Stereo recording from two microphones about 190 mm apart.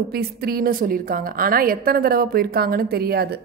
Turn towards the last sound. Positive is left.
turn(degrees=-55)  # may be behind; listen again after turning